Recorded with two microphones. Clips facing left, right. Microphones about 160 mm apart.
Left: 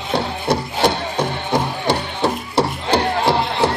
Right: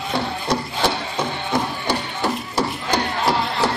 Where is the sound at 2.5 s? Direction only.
30° left (ahead or behind).